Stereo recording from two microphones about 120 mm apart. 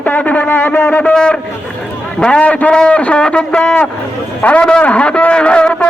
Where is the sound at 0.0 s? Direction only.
15° left (ahead or behind).